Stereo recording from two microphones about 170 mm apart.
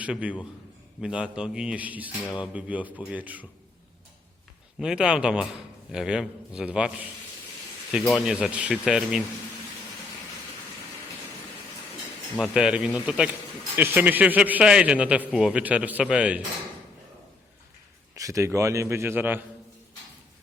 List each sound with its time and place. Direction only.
0.0 s a man's voice: 5° right (ahead or behind)
4.8 s speech: 5° right (ahead or behind)
12.4 s a man's voice: 5° right (ahead or behind)
18.1 s a man's voice: 20° right (ahead or behind)